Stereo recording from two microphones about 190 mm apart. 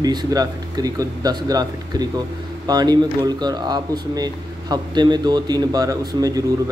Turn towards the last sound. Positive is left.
turn(degrees=-20)  # may be behind; listen again after turning